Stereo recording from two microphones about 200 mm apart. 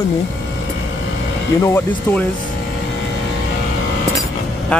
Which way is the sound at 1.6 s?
15° left (ahead or behind).